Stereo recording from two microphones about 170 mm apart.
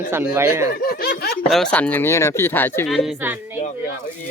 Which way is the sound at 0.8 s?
60° left (ahead or behind).